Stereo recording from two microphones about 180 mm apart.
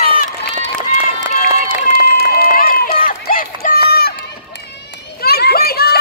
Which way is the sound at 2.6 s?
55° left (ahead or behind).